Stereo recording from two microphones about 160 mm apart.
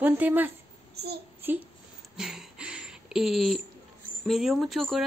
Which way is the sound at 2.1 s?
5° right (ahead or behind).